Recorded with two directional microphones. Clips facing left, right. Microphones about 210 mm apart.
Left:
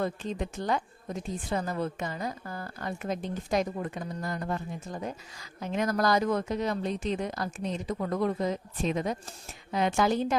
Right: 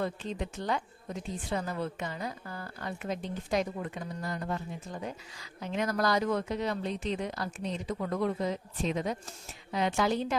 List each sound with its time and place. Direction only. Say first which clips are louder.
0.0 s speech: left 2 dB; 45° left (ahead or behind)